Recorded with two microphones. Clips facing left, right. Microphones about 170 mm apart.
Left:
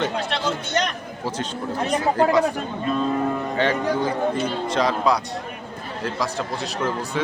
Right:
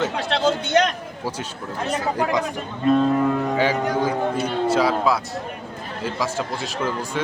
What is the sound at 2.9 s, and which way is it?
Music, 70° right (ahead or behind).